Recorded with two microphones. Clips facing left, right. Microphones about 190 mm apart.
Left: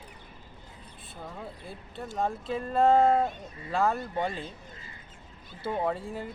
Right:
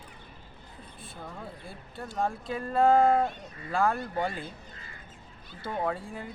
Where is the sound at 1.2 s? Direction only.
5° left (ahead or behind).